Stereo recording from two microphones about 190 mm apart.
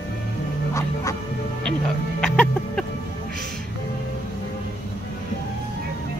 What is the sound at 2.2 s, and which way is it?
Chicken, 5° left (ahead or behind).